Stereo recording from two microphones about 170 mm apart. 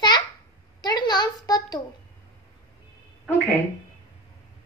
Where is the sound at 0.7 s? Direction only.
25° left (ahead or behind).